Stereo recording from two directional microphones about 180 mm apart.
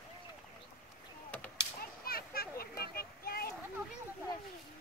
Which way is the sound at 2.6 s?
55° left (ahead or behind).